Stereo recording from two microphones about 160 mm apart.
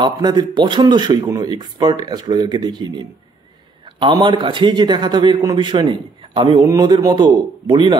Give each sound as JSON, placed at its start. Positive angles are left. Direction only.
{"t": 0.0, "sound": "a man's voice", "side_deg": -25}